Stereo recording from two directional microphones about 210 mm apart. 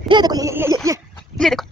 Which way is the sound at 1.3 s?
Centre (ahead or behind).